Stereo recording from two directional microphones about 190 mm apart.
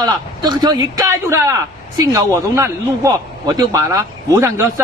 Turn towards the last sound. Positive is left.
turn(degrees=-15)  # may be behind; listen again after turning